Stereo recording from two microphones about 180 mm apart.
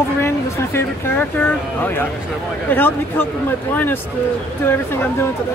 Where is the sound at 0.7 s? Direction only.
10° left (ahead or behind).